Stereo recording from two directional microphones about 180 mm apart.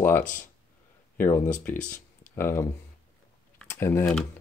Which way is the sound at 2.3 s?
15° left (ahead or behind).